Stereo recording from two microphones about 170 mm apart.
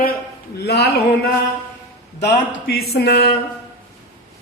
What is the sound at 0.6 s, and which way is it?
Speech, 75° left (ahead or behind).